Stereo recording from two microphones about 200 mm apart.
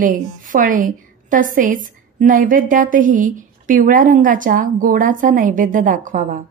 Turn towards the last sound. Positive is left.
turn(degrees=-40)  # may be behind; listen again after turning